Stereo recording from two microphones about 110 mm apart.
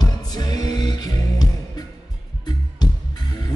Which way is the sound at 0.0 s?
40° left (ahead or behind).